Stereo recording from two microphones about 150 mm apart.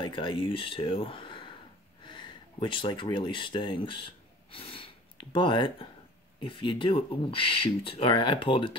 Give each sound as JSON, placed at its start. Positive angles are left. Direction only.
{"t": 0.0, "sound": "speech", "side_deg": 35}